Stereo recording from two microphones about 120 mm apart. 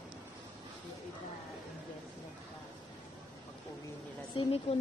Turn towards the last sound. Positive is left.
turn(degrees=55)  # may be behind; listen again after turning